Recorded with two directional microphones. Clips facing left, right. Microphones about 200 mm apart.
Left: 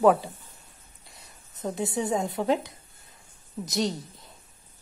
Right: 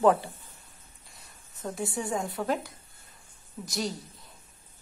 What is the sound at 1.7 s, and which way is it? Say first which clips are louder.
Speech: left 4 dB; 20° left (ahead or behind).